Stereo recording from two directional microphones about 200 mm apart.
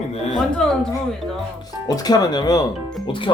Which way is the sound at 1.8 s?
20° left (ahead or behind).